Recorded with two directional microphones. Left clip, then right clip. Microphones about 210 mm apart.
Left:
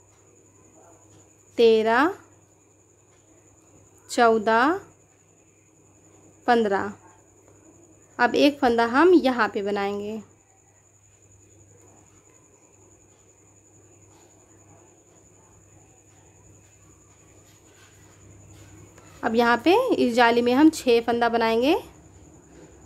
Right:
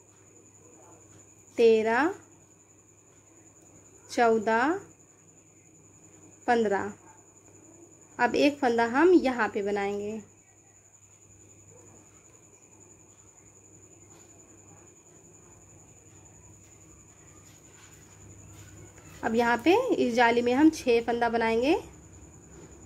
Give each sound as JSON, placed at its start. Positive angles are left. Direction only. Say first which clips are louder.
{"t": 1.5, "sound": "a woman's voice", "louder": "left 4 dB", "side_deg": 15}
{"t": 4.1, "sound": "a woman's voice", "louder": "left 5 dB", "side_deg": 15}
{"t": 6.4, "sound": "a woman's voice", "louder": "left 4 dB", "side_deg": 15}
{"t": 8.2, "sound": "a woman's voice", "louder": "left 5 dB", "side_deg": 15}
{"t": 19.2, "sound": "a woman's voice", "louder": "left 4 dB", "side_deg": 10}